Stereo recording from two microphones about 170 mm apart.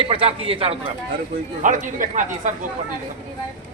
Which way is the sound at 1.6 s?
50° right (ahead or behind).